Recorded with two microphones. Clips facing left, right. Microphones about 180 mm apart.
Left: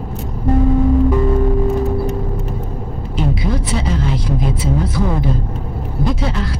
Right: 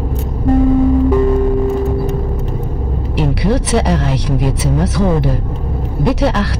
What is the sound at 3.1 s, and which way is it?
Speech, 70° right (ahead or behind).